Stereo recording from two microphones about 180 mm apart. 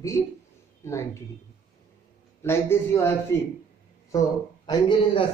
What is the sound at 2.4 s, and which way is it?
Speech, 15° left (ahead or behind).